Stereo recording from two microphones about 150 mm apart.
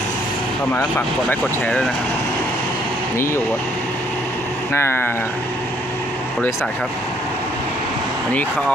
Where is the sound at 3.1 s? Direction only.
20° left (ahead or behind).